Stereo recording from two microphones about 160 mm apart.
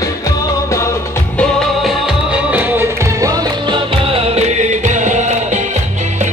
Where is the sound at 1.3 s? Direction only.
5° left (ahead or behind).